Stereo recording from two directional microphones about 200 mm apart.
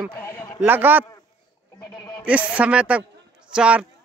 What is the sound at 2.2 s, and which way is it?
Speech, 5° right (ahead or behind).